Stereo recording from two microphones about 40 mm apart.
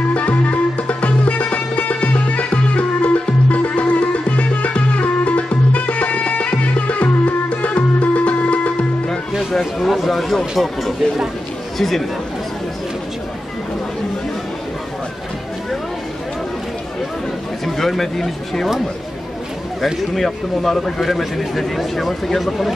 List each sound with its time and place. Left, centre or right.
0.1 s music: left
9.5 s a sound: centre
9.8 s a sound: centre
10.6 s a man's voice: centre
17.6 s a man's voice: centre
19.8 s speech: centre
21.0 s a man's voice: centre